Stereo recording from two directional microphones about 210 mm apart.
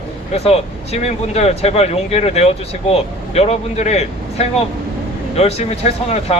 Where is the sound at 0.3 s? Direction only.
30° left (ahead or behind).